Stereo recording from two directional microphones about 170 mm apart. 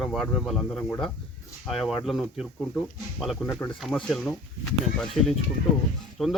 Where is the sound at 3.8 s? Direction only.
Centre (ahead or behind).